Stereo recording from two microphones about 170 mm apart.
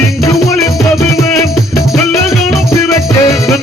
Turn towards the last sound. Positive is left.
turn(degrees=20)  # may be behind; listen again after turning